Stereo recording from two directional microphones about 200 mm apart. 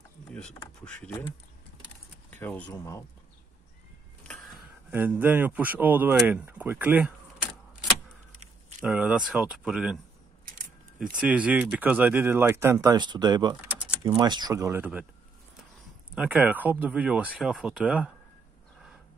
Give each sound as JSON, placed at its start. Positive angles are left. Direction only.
{"t": 2.3, "sound": "speech", "side_deg": 10}
{"t": 4.2, "sound": "a sound", "side_deg": 5}
{"t": 4.9, "sound": "speech", "side_deg": -10}
{"t": 8.8, "sound": "speech", "side_deg": -5}
{"t": 11.0, "sound": "speech", "side_deg": -5}
{"t": 13.7, "sound": "a sound", "side_deg": -10}
{"t": 14.2, "sound": "speech", "side_deg": -20}
{"t": 16.2, "sound": "speech", "side_deg": -5}